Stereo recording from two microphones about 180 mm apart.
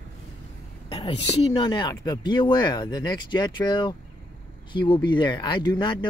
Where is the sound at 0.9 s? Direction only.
30° left (ahead or behind).